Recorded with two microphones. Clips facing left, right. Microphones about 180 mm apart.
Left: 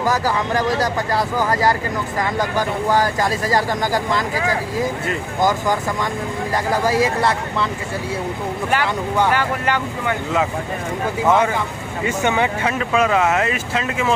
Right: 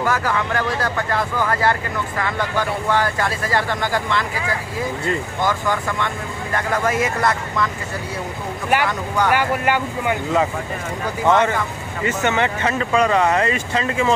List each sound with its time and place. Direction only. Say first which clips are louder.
0.0 s speech: left 1 dB; 35° left (ahead or behind)
9.3 s speech: right 1 dB; 15° right (ahead or behind)
11.2 s speech: right 1 dB; 10° left (ahead or behind)